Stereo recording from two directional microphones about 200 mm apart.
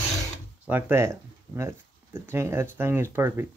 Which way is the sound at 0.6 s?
10° right (ahead or behind).